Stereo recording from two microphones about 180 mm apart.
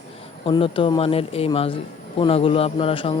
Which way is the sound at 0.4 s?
30° left (ahead or behind).